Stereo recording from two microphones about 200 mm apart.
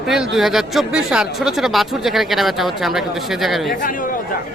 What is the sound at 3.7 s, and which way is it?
Speech, 40° left (ahead or behind).